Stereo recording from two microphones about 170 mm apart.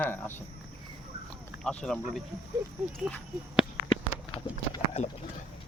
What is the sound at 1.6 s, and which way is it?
Speech, 5° left (ahead or behind).